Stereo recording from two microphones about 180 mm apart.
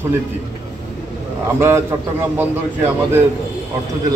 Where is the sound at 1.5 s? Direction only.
15° right (ahead or behind).